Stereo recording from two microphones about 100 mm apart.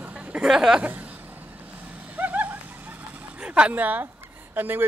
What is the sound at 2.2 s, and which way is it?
Vehicle, 15° right (ahead or behind).